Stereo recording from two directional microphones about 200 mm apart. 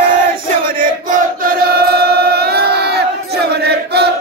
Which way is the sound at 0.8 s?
40° right (ahead or behind).